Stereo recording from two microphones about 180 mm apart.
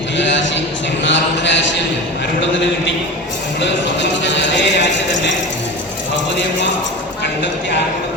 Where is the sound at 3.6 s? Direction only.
80° left.